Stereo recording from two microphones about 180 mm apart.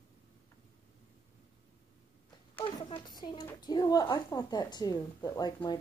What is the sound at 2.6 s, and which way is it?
A woman's voice, 25° left (ahead or behind).